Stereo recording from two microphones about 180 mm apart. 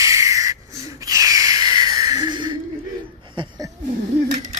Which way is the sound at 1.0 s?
20° right (ahead or behind).